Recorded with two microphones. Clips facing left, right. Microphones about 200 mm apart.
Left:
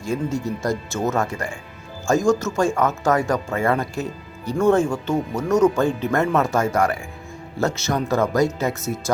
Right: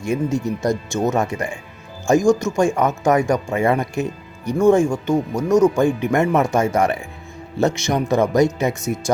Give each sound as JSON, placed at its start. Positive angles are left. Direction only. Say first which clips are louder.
{"t": 0.0, "sound": "speech", "louder": "right 3 dB", "side_deg": -15}